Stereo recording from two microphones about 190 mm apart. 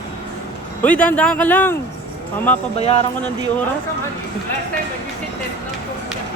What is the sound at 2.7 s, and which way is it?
Speech, 35° left (ahead or behind).